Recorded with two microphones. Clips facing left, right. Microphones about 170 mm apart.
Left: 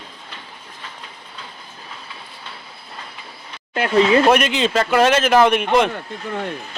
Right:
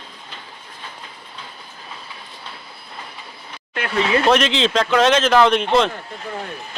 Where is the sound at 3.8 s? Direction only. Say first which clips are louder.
Left 5 dB; 30° left (ahead or behind).